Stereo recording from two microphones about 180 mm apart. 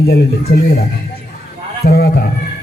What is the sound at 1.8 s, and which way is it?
Speech, 60° left (ahead or behind).